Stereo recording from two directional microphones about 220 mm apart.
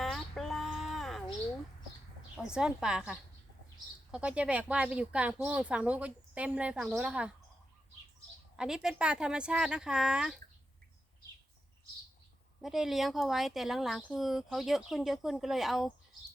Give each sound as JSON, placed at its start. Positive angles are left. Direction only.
{"t": 0.0, "sound": "a sound", "side_deg": 0}
{"t": 2.3, "sound": "speech", "side_deg": -5}
{"t": 8.5, "sound": "speech", "side_deg": -5}
{"t": 12.6, "sound": "speech", "side_deg": 0}